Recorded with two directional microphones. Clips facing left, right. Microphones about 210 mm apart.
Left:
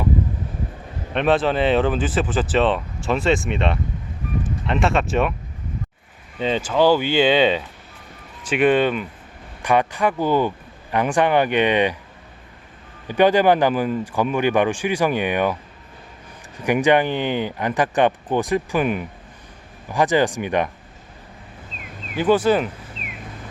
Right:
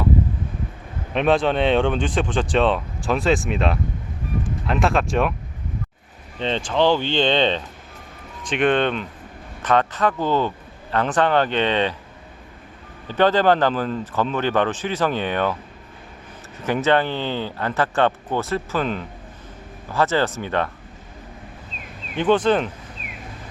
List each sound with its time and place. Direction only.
1.1 s speech: centre (ahead or behind)
6.4 s speech: 5° left (ahead or behind)
13.1 s speech: 15° left (ahead or behind)
16.6 s speech: 15° left (ahead or behind)
22.1 s speech: 5° left (ahead or behind)